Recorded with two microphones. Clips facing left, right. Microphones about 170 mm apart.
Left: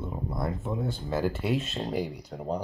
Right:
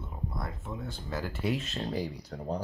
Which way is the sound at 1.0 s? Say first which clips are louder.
Left 4 dB; 25° left (ahead or behind).